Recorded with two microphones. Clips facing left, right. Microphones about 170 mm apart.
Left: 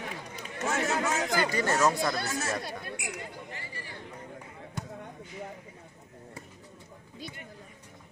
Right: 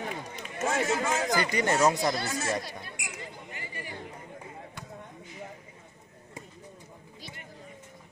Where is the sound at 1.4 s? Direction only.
15° right (ahead or behind).